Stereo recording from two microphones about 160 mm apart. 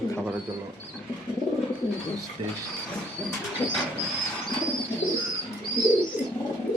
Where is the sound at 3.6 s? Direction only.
10° left (ahead or behind).